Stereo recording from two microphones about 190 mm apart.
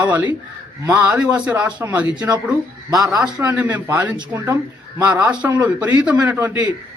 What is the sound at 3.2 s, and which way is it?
A man's voice, 5° right (ahead or behind).